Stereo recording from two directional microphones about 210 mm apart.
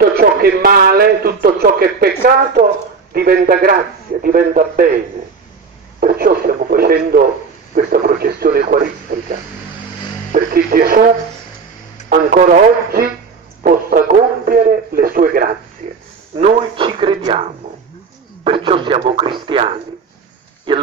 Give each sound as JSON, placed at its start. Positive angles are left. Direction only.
{"t": 0.1, "sound": "a man's voice", "side_deg": -45}
{"t": 5.9, "sound": "radio", "side_deg": -45}
{"t": 7.7, "sound": "a man's voice", "side_deg": -40}
{"t": 10.3, "sound": "a man's voice", "side_deg": -45}
{"t": 12.1, "sound": "a man's voice", "side_deg": -45}
{"t": 15.8, "sound": "a man's voice", "side_deg": -30}